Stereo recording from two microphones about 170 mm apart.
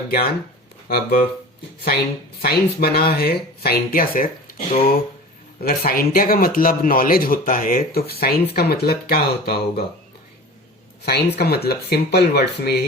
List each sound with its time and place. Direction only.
0.9 s speech: 60° left (ahead or behind)
2.4 s speech: 65° left (ahead or behind)
11.0 s speech: 70° left (ahead or behind)